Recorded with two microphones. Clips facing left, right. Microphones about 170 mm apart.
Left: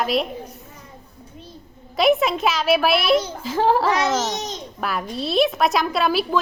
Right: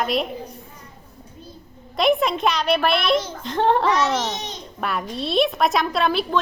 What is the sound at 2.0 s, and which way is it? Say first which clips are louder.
A child's voice: left 1 dB; centre (ahead or behind).